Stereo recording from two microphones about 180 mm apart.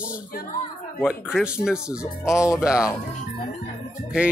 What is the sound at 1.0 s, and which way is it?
Speech, 5° right (ahead or behind).